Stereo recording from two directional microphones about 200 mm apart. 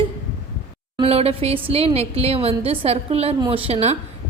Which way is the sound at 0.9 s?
30° right (ahead or behind).